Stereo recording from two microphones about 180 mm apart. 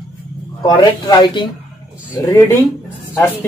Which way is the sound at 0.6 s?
20° left (ahead or behind).